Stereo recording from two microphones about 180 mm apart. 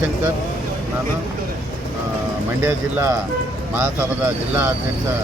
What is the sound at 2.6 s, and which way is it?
Speech, 15° right (ahead or behind).